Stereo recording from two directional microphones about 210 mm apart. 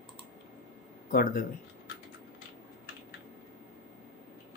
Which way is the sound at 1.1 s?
40° left (ahead or behind).